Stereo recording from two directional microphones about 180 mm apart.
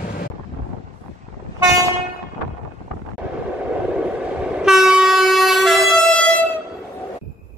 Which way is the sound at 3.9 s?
5° right (ahead or behind).